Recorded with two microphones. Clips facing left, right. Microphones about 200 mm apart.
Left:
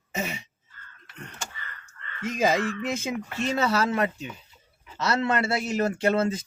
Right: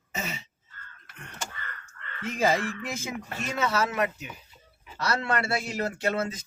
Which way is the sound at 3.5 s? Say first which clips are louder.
Left 2 dB; 30° left (ahead or behind).